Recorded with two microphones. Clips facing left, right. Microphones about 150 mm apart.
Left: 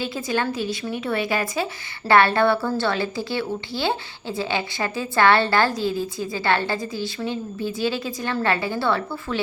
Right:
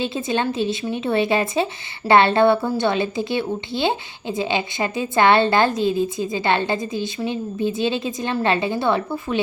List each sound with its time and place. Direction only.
0.0 s speech: 25° right (ahead or behind)